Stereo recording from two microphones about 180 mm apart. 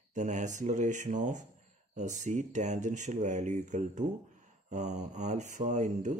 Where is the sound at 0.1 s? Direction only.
40° right (ahead or behind).